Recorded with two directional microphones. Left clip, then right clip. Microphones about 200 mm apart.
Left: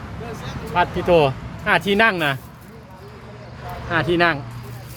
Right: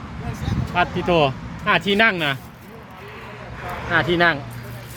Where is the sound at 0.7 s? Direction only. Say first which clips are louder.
Left 3 dB; centre (ahead or behind).